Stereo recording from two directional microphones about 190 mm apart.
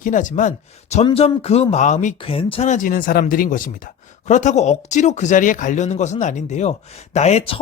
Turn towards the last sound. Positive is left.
turn(degrees=30)  # may be behind; listen again after turning